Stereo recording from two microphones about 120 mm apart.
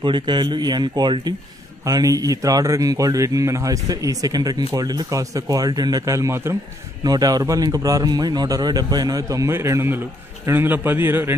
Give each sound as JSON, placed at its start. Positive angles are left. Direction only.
{"t": 0.0, "sound": "speech", "side_deg": -40}